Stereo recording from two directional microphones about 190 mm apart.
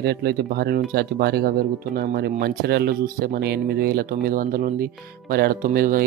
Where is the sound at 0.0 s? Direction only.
60° right (ahead or behind).